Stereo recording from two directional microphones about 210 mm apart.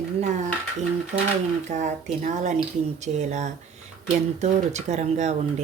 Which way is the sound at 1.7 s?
35° right (ahead or behind).